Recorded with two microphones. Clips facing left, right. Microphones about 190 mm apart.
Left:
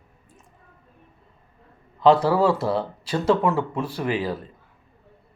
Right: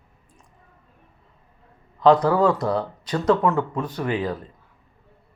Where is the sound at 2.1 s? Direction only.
5° left (ahead or behind).